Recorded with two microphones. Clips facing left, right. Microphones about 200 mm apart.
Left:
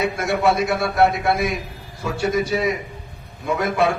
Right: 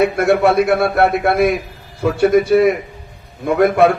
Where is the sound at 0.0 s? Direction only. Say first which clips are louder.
Right 7 dB; 55° right (ahead or behind).